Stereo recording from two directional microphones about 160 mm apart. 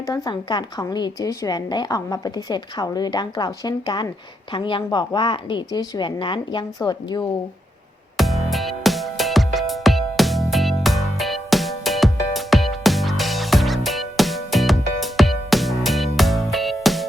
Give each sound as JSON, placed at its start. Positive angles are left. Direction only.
{"t": 0.0, "sound": "a woman's voice", "side_deg": 25}
{"t": 8.1, "sound": "music", "side_deg": 0}